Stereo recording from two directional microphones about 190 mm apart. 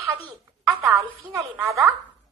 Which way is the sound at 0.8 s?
15° right (ahead or behind).